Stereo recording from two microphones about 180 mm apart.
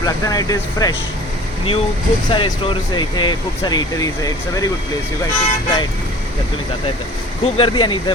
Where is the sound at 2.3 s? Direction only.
30° left (ahead or behind).